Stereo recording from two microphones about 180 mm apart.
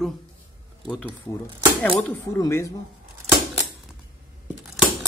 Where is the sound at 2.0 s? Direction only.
15° left (ahead or behind).